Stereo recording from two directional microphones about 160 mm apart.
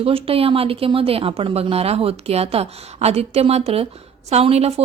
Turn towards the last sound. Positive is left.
turn(degrees=-40)  # may be behind; listen again after turning